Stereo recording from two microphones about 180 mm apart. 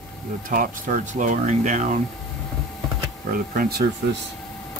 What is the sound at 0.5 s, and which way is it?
Speech, 45° right (ahead or behind).